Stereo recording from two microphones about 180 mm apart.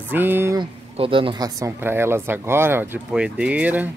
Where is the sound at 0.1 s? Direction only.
10° right (ahead or behind).